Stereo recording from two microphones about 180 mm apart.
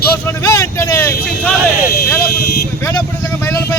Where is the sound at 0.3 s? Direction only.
15° left (ahead or behind).